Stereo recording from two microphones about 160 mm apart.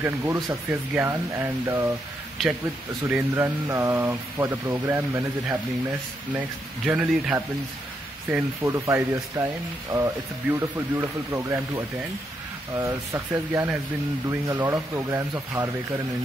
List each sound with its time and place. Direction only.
0.0 s speech: 15° right (ahead or behind)
3.1 s speech: 10° right (ahead or behind)